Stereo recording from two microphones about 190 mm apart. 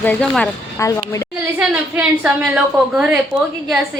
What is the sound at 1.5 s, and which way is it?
A woman's voice, 5° right (ahead or behind).